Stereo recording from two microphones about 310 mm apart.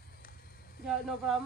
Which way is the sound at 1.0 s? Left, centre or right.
Centre.